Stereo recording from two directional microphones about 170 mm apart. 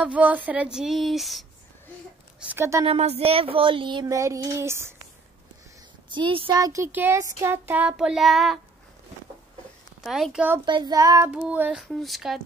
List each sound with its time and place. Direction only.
0.0 s speech: 10° right (ahead or behind)
2.4 s speech: 15° right (ahead or behind)
2.8 s child singing: 35° right (ahead or behind); by 4.9 s 15° right (ahead or behind)
6.0 s speech: 30° right (ahead or behind); by 8.5 s centre (ahead or behind)
10.0 s speech: centre (ahead or behind)
10.6 s child singing: 25° right (ahead or behind)
11.3 s speech: 10° right (ahead or behind)